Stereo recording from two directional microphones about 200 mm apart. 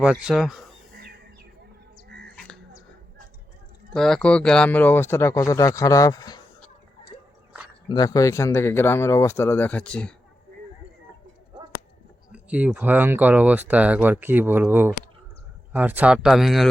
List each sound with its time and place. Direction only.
0.0 s speech: 5° right (ahead or behind)
2.0 s a sound: 55° right (ahead or behind)
3.9 s speech: centre (ahead or behind); by 6.4 s 20° left (ahead or behind)
7.9 s speech: 20° left (ahead or behind)
12.3 s speech: 5° right (ahead or behind)